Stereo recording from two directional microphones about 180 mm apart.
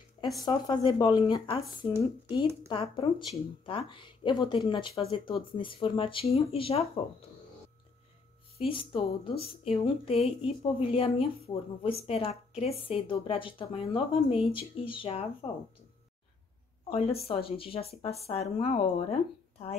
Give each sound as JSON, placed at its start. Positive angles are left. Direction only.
{"t": 0.4, "sound": "speech", "side_deg": 25}
{"t": 8.9, "sound": "speech", "side_deg": 30}
{"t": 16.9, "sound": "speech", "side_deg": 35}